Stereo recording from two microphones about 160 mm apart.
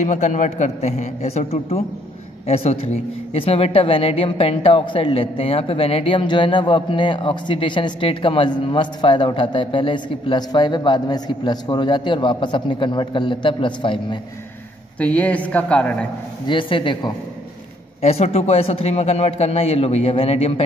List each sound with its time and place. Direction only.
0.0 s a man's voice: 50° left (ahead or behind); by 14.0 s 30° left (ahead or behind)
15.0 s speech: 10° left (ahead or behind)
16.4 s a woman's voice: 30° left (ahead or behind)
18.0 s a woman's voice: 40° left (ahead or behind)